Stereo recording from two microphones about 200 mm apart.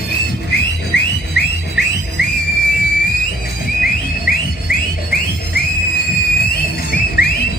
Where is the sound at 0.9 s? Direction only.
60° left (ahead or behind).